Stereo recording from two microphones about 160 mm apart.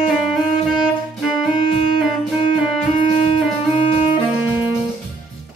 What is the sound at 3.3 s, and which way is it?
Music, 35° left (ahead or behind).